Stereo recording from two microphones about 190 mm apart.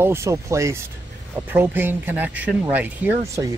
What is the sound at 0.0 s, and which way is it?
Speech, 15° right (ahead or behind).